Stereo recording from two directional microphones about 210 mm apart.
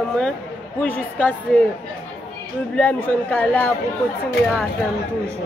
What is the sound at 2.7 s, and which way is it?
A man's voice, 10° left (ahead or behind).